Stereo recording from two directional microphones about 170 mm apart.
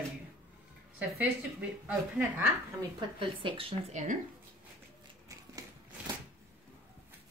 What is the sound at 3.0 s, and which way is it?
Speech, 30° right (ahead or behind).